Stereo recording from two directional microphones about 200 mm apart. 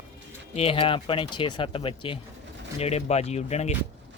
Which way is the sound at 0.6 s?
30° left (ahead or behind).